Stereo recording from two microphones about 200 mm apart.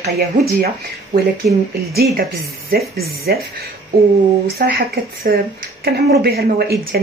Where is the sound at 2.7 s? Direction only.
50° right (ahead or behind).